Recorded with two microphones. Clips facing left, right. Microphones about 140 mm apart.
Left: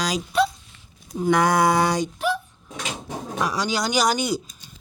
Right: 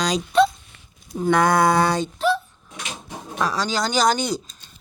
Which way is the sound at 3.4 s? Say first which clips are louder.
Right 2 dB; 15° left (ahead or behind).